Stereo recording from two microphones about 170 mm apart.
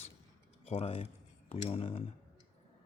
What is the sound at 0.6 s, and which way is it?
Speech, 35° left (ahead or behind).